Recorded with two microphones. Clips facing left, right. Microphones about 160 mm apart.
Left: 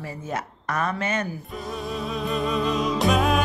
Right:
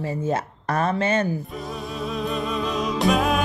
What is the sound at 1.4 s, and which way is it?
Music, centre (ahead or behind).